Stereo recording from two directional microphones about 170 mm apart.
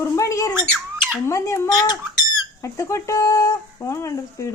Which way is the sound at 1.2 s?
15° left (ahead or behind).